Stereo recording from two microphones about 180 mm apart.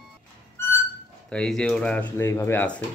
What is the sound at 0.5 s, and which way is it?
Music, 15° left (ahead or behind).